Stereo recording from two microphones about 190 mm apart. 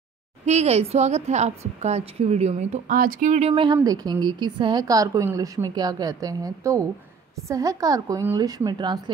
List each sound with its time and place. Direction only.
0.5 s a woman's voice: 35° right (ahead or behind)